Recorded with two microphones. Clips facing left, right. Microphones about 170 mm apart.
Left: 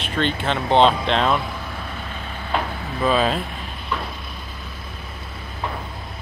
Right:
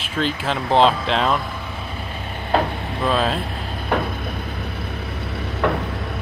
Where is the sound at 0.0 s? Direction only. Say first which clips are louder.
Even; 5° right (ahead or behind).